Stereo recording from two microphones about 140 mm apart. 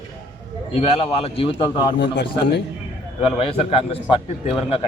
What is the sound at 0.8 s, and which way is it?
A man's voice, 45° left (ahead or behind).